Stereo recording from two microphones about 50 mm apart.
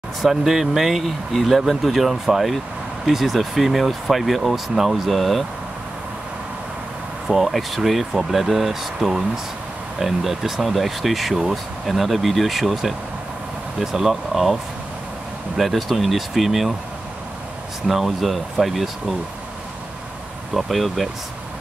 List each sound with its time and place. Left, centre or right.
0.2 s speech: centre
7.2 s speech: centre
17.8 s speech: centre
20.5 s speech: centre